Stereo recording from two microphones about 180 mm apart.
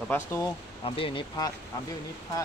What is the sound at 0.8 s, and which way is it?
Speech, 30° left (ahead or behind).